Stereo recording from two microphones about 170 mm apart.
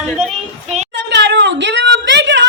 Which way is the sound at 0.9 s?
90° right.